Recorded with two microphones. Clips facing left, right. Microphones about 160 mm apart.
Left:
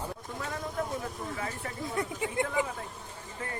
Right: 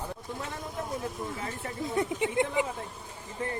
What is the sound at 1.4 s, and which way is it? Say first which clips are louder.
Speech: right 1 dB; 20° right (ahead or behind).